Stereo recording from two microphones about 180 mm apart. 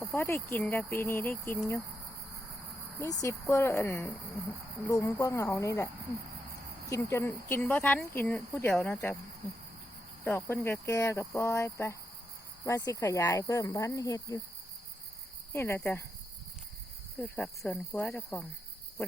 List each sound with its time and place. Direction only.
0.1 s speech: 10° left (ahead or behind)
3.0 s speech: 15° left (ahead or behind)
6.9 s speech: 15° left (ahead or behind)
10.2 s speech: 15° left (ahead or behind)
15.5 s speech: 15° left (ahead or behind)
17.2 s speech: 5° left (ahead or behind)